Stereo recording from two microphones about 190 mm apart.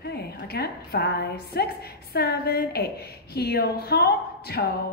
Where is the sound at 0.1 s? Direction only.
60° left (ahead or behind).